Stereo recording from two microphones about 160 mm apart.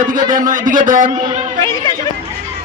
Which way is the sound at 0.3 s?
55° right (ahead or behind).